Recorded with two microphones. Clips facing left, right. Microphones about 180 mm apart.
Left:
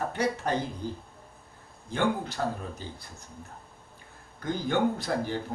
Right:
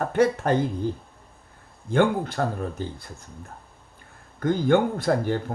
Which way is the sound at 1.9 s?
55° right (ahead or behind).